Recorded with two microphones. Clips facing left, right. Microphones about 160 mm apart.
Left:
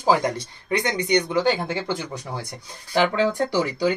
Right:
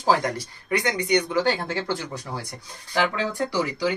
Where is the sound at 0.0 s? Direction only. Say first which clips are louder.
Left 2 dB; 20° left (ahead or behind).